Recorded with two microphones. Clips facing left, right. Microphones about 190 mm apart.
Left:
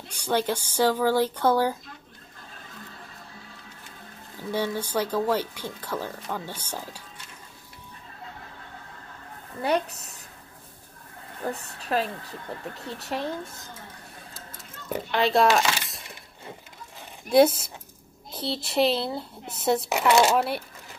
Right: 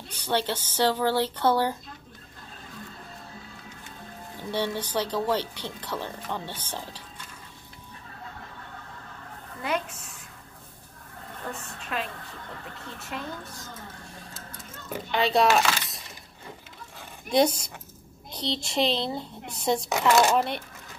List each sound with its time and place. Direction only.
0.1 s a woman's voice: 10° left (ahead or behind)
4.5 s a woman's voice: 10° left (ahead or behind)
9.6 s a woman's voice: 35° left (ahead or behind)
11.4 s a woman's voice: 35° left (ahead or behind)
15.0 s speech: centre (ahead or behind)
17.3 s a child's voice: 5° left (ahead or behind)
19.9 s a woman's voice: 15° left (ahead or behind)
20.2 s a child's voice: 5° left (ahead or behind)